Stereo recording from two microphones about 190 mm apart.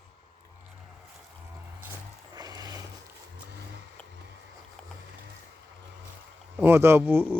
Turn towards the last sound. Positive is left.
turn(degrees=-10)  # may be behind; listen again after turning